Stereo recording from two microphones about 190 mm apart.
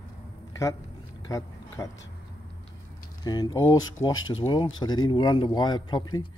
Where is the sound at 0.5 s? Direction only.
15° left (ahead or behind).